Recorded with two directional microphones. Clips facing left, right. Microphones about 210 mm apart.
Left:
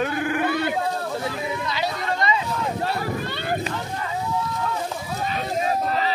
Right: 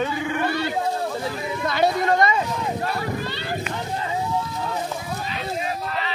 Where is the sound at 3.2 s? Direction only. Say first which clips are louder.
Left 1 dB; 55° left (ahead or behind).